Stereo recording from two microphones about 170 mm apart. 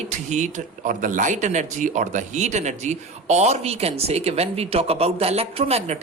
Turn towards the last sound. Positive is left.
turn(degrees=-40)  # may be behind; listen again after turning